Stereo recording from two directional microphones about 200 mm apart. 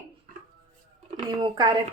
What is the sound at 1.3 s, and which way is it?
Speech, 20° right (ahead or behind).